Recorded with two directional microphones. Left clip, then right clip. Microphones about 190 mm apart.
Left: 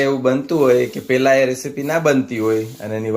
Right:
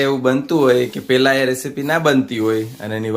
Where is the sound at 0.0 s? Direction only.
10° right (ahead or behind).